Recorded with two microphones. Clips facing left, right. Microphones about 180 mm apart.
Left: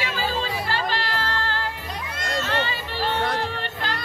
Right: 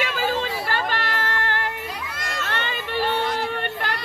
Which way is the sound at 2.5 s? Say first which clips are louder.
Left 1 dB; 60° right (ahead or behind).